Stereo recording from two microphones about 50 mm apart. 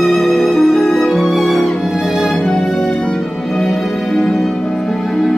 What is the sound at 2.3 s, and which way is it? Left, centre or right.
Music, centre.